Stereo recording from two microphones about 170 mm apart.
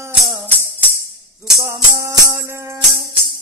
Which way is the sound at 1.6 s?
15° right (ahead or behind).